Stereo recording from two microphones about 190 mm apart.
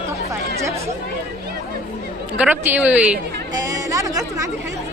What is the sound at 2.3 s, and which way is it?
Speech, 5° right (ahead or behind).